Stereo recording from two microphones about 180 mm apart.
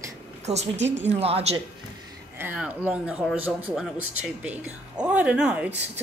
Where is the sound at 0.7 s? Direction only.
90° right.